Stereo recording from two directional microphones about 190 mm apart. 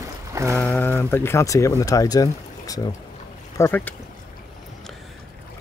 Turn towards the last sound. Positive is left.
turn(degrees=10)  # may be behind; listen again after turning